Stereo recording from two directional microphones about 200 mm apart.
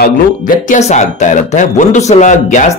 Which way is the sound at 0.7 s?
35° left (ahead or behind).